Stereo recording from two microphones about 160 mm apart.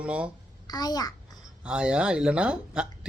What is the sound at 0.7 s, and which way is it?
Speech, 25° left (ahead or behind).